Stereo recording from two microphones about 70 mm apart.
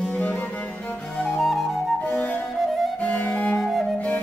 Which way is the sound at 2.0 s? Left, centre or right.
Left.